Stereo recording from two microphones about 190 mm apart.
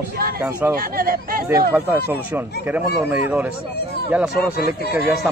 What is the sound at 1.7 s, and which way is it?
Speech, 10° right (ahead or behind).